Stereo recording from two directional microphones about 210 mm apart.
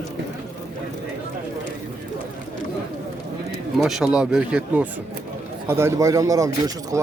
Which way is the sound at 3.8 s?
Centre (ahead or behind).